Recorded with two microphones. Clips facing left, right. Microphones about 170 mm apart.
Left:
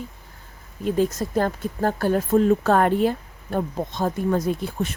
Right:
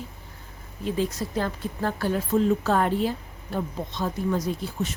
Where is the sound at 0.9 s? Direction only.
45° left (ahead or behind).